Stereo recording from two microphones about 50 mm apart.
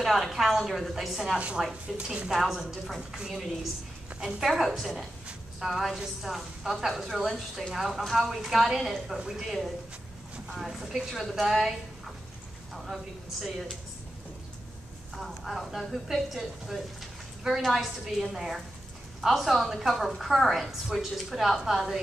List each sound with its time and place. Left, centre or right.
0.0 s a woman's voice: centre
2.0 s a woman's voice: centre
2.3 s a woman's voice: centre
12.7 s a woman's voice: centre
15.1 s a woman's voice: centre